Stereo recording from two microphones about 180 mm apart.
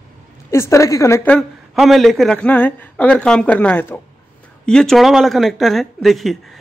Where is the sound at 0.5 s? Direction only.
15° left (ahead or behind).